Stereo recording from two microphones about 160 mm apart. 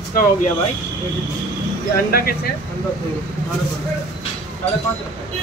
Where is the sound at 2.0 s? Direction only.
70° left (ahead or behind).